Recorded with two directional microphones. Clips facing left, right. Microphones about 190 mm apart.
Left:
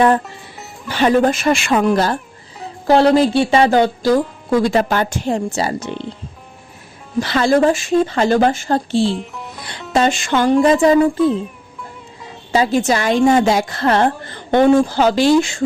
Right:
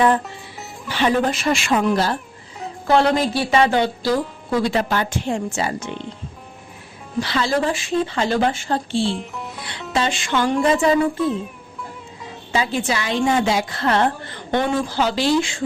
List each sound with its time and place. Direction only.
0.9 s speech: 45° left (ahead or behind)
2.8 s speech: 35° left (ahead or behind)
7.2 s speech: 50° left (ahead or behind)
9.0 s music: centre (ahead or behind)
9.9 s speech: 45° left (ahead or behind)
11.2 s music: centre (ahead or behind)
12.5 s speech: 40° left (ahead or behind)